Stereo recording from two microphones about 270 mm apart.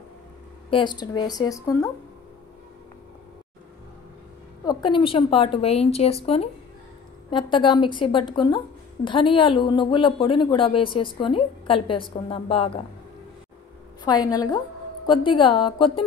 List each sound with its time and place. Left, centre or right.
0.7 s a woman's voice: centre
4.6 s a woman's voice: centre
14.0 s a woman's voice: centre